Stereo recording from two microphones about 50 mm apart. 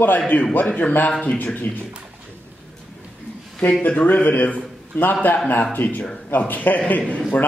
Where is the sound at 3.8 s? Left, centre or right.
Left.